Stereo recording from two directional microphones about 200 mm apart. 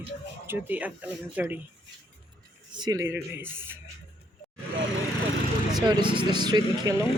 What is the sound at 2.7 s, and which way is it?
Speech, 20° right (ahead or behind).